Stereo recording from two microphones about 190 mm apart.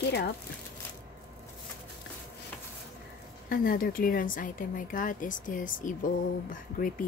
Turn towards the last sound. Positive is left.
turn(degrees=45)  # may be behind; listen again after turning